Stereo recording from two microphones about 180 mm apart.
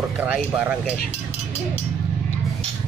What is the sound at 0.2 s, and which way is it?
Speech, 10° right (ahead or behind).